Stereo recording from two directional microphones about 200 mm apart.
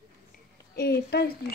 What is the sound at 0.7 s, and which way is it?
Speech, 55° left (ahead or behind).